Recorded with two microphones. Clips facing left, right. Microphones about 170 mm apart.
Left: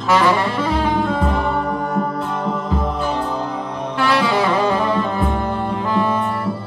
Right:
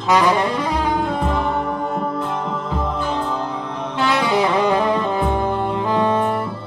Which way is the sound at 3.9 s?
20° right (ahead or behind).